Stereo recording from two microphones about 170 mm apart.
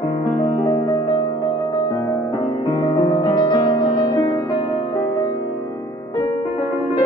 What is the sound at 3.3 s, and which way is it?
Music, 25° left (ahead or behind).